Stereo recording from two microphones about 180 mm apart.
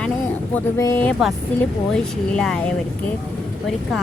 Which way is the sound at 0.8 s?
15° left (ahead or behind).